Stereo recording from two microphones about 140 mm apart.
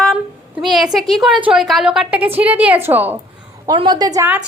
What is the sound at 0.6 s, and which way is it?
A woman's voice, centre (ahead or behind).